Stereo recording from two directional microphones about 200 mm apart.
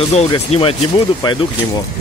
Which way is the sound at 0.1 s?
30° left (ahead or behind).